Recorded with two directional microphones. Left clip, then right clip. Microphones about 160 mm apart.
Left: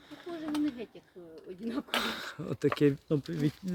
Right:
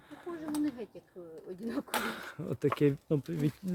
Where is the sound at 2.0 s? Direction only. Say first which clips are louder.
Left 2 dB; 10° left (ahead or behind).